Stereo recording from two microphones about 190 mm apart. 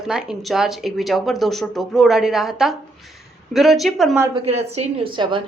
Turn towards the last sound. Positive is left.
turn(degrees=-25)  # may be behind; listen again after turning